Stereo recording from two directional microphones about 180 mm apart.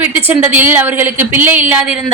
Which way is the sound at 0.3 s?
10° right (ahead or behind).